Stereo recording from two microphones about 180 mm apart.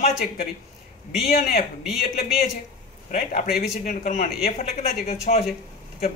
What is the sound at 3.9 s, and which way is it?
Speech, 45° left (ahead or behind).